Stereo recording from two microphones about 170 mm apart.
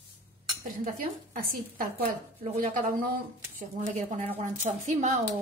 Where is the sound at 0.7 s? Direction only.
50° right (ahead or behind).